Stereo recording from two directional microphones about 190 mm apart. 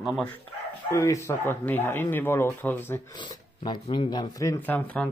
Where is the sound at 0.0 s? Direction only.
Centre (ahead or behind).